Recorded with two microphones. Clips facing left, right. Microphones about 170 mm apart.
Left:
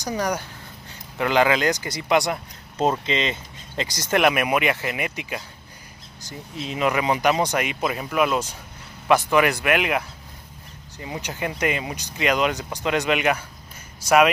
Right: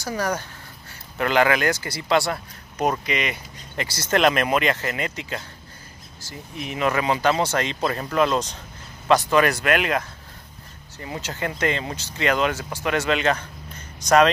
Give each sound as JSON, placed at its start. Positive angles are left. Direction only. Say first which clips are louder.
{"t": 0.0, "sound": "a man's voice", "louder": "left 1 dB", "side_deg": 15}
{"t": 6.7, "sound": "a man's voice", "louder": "even", "side_deg": 20}